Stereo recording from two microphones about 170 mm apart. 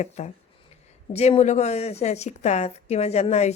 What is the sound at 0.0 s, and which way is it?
A woman's voice, 40° left (ahead or behind).